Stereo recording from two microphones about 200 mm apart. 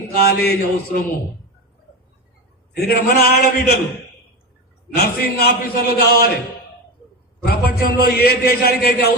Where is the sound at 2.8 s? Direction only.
50° left (ahead or behind).